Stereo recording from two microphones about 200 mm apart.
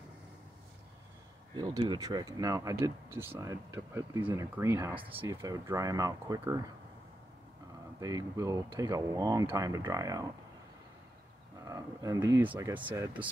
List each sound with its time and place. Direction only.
1.5 s speech: 20° right (ahead or behind)
8.0 s speech: 15° right (ahead or behind)
11.6 s speech: 15° right (ahead or behind)